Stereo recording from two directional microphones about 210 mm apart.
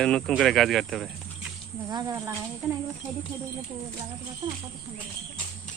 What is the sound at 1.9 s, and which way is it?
Speech, 15° right (ahead or behind).